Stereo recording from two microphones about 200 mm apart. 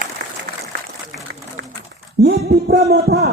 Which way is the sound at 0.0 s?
50° right (ahead or behind).